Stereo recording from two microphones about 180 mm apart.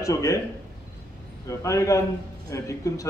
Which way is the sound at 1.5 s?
20° left (ahead or behind).